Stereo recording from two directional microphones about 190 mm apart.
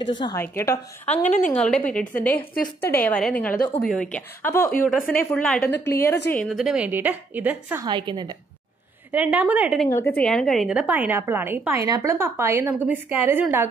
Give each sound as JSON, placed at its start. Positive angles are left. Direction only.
{"t": 0.2, "sound": "a woman's voice", "side_deg": 15}
{"t": 1.0, "sound": "a woman's voice", "side_deg": 40}
{"t": 1.5, "sound": "a woman's voice", "side_deg": 5}
{"t": 6.3, "sound": "a woman's voice", "side_deg": 0}
{"t": 7.8, "sound": "a woman's voice", "side_deg": -20}
{"t": 9.1, "sound": "a woman's voice", "side_deg": -10}